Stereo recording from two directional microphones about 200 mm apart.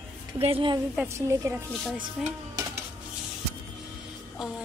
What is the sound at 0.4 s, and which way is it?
Speech, 25° right (ahead or behind).